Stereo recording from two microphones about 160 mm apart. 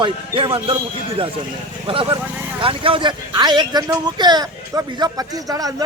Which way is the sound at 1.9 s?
30° right (ahead or behind).